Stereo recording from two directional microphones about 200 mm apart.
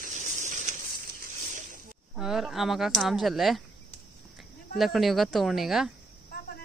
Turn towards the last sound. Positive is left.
turn(degrees=0)  # may be behind; listen again after turning